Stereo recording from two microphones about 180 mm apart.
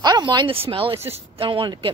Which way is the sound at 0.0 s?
25° right (ahead or behind).